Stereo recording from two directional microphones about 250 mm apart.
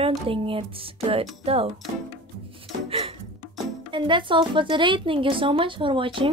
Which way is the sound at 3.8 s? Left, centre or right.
Centre.